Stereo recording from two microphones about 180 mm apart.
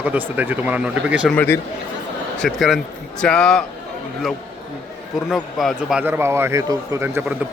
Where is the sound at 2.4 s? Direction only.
Centre (ahead or behind).